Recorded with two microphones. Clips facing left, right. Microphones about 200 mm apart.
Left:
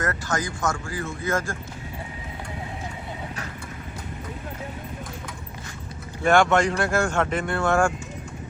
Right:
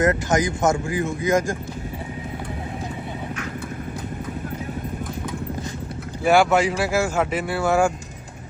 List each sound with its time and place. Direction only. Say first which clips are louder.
0.0 s speech: right 8 dB; 20° right (ahead or behind)
6.2 s speech: right 2 dB; 5° right (ahead or behind)